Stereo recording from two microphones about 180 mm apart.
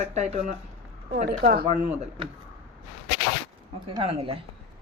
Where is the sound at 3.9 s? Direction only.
30° right (ahead or behind).